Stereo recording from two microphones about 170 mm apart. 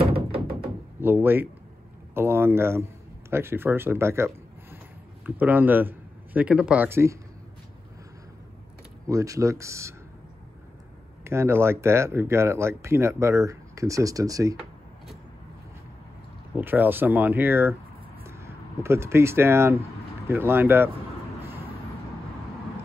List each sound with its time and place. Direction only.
1.0 s a man's voice: 10° right (ahead or behind)
9.0 s speech: 20° right (ahead or behind)
11.2 s speech: 15° right (ahead or behind)
16.5 s speech: 10° right (ahead or behind)